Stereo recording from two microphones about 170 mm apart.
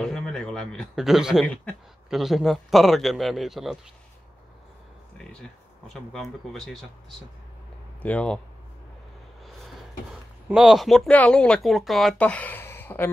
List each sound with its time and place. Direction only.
0.0 s a man's voice: 5° left (ahead or behind)
6.1 s speech: centre (ahead or behind)
8.0 s speech: 5° left (ahead or behind)
9.4 s a sound: centre (ahead or behind)
10.5 s speech: 5° right (ahead or behind)